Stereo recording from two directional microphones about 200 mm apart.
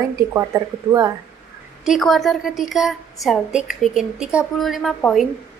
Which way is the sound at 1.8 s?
Centre (ahead or behind).